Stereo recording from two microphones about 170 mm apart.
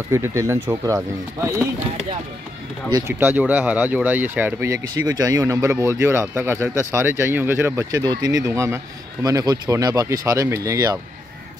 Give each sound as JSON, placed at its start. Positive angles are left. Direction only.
{"t": 0.1, "sound": "speech", "side_deg": -15}
{"t": 2.9, "sound": "speech", "side_deg": -15}